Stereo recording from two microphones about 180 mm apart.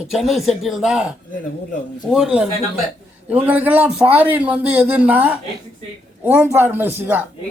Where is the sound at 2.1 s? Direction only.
5° right (ahead or behind).